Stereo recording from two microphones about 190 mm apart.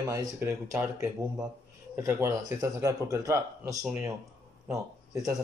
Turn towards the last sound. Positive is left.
turn(degrees=-15)  # may be behind; listen again after turning